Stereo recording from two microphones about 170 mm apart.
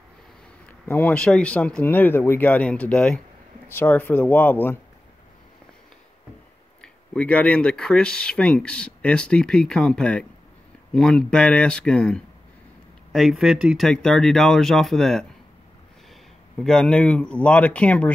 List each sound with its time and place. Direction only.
0.7 s speech: 10° left (ahead or behind)
6.8 s speech: 5° left (ahead or behind)
16.5 s speech: 5° left (ahead or behind)